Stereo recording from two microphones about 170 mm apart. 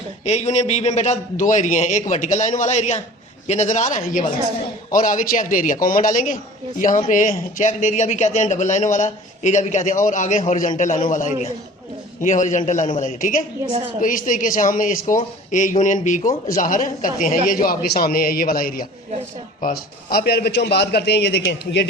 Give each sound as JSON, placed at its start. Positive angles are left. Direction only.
{"t": 0.3, "sound": "a man's voice", "side_deg": 40}